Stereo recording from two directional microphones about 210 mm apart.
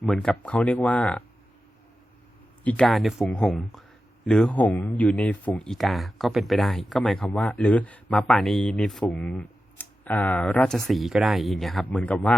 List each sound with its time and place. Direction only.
0.0 s speech: centre (ahead or behind)
2.6 s speech: centre (ahead or behind)